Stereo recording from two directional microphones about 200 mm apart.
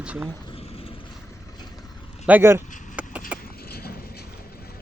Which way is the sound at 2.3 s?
10° right (ahead or behind).